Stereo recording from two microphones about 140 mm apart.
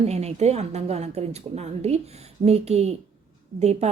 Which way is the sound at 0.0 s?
50° right (ahead or behind).